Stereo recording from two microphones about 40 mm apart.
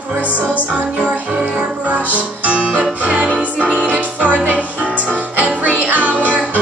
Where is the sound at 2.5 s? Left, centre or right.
Right.